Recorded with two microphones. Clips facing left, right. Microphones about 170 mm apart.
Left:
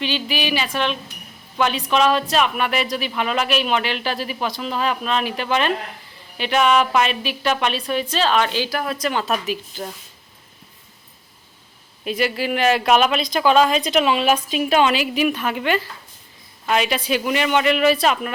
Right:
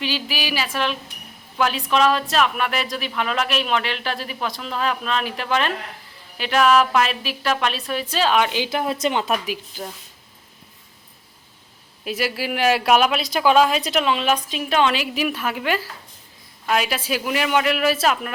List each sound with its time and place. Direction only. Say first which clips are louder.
0.0 s speech: left 3 dB; 5° right (ahead or behind)
12.0 s speech: left 3 dB; 5° right (ahead or behind)
14.0 s speech: left 2 dB; 10° left (ahead or behind)